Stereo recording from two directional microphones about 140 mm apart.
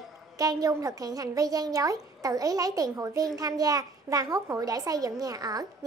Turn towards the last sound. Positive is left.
turn(degrees=-25)  # may be behind; listen again after turning